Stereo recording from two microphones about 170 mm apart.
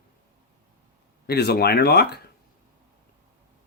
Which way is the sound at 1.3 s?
70° left (ahead or behind).